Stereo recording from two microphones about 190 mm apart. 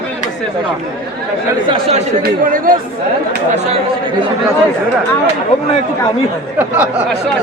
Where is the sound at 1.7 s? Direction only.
30° right (ahead or behind).